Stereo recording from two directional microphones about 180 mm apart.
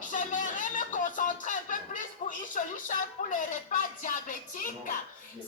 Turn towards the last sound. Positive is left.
turn(degrees=50)  # may be behind; listen again after turning